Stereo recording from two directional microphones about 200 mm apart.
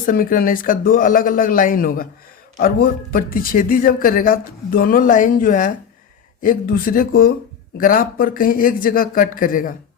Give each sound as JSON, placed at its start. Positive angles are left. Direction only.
{"t": 0.0, "sound": "speech", "side_deg": 45}